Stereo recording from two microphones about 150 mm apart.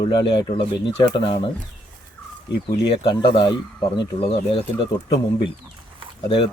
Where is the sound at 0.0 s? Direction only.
35° left (ahead or behind).